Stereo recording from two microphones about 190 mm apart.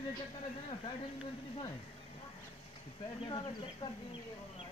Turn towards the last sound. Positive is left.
turn(degrees=25)  # may be behind; listen again after turning